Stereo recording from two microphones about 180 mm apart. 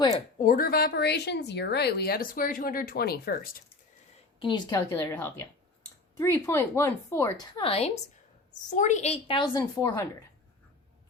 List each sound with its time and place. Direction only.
0.1 s speech: 45° left (ahead or behind)
4.4 s a woman's voice: 25° left (ahead or behind)